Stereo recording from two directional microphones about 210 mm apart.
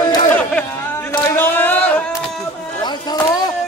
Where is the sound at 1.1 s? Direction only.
10° left (ahead or behind).